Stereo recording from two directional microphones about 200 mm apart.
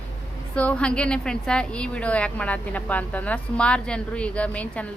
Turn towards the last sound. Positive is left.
turn(degrees=5)  # may be behind; listen again after turning